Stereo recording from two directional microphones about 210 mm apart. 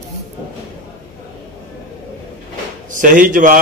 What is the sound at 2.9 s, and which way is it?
Speech, 40° right (ahead or behind).